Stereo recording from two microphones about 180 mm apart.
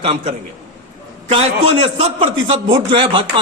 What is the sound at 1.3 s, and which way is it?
A man's voice, 35° right (ahead or behind).